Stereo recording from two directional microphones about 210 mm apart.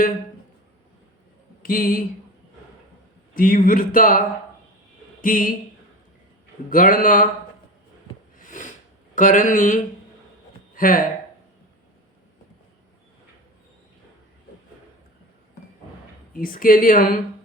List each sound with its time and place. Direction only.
1.6 s speech: 45° left (ahead or behind)
3.3 s speech: 45° left (ahead or behind)
6.7 s speech: 40° left (ahead or behind)
8.4 s a sound: 40° left (ahead or behind)
9.1 s speech: 40° left (ahead or behind)
16.3 s speech: 40° left (ahead or behind)